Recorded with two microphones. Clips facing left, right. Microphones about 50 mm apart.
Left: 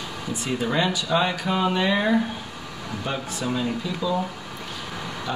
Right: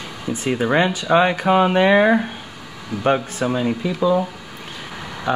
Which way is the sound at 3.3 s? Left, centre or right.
Right.